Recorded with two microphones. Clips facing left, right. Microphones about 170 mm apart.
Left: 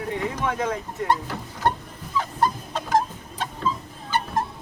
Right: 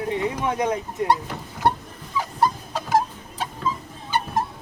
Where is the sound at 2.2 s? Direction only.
5° right (ahead or behind).